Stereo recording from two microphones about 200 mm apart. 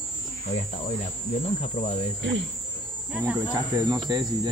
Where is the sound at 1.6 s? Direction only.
35° left (ahead or behind).